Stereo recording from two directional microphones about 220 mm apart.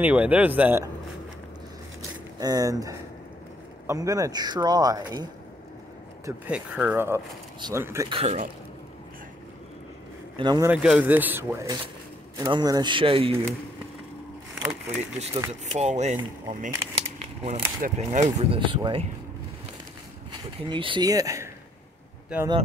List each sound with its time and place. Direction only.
0.0 s speech: 5° right (ahead or behind)
2.0 s a sound: 15° right (ahead or behind)
3.8 s speech: 15° right (ahead or behind)
6.2 s speech: 5° right (ahead or behind)
8.1 s speech: 30° right (ahead or behind)
10.3 s speech: 20° right (ahead or behind)
10.7 s speech: 5° right (ahead or behind); by 13.3 s 25° right (ahead or behind)
14.5 s a sound: centre (ahead or behind)
15.6 s speech: 30° right (ahead or behind)
20.2 s speech: 20° right (ahead or behind)